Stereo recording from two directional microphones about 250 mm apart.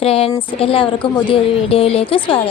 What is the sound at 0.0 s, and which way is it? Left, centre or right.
A woman's voice, left.